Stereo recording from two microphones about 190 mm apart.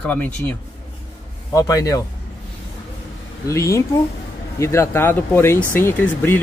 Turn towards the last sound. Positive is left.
turn(degrees=10)  # may be behind; listen again after turning